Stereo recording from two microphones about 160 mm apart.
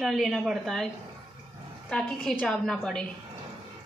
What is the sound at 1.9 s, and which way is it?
A woman's voice, 5° left (ahead or behind).